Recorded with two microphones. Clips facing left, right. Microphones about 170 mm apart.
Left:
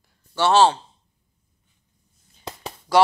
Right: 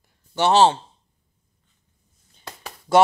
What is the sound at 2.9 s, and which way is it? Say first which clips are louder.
Speech: right 1 dB; 25° right (ahead or behind).